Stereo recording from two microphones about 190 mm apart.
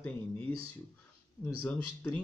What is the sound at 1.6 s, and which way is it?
Speech, 10° left (ahead or behind).